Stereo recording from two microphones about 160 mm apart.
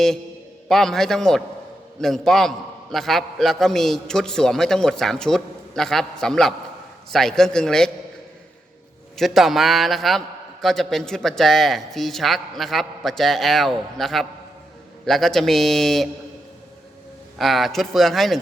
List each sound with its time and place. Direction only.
0.7 s a man's voice: centre (ahead or behind)
9.1 s a man's voice: centre (ahead or behind)
17.3 s a man's voice: centre (ahead or behind)